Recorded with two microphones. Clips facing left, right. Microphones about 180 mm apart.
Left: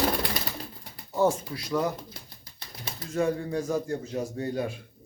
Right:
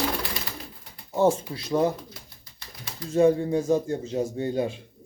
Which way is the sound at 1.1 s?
25° right (ahead or behind).